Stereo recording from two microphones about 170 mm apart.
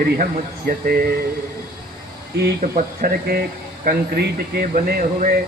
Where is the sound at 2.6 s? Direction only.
55° right (ahead or behind).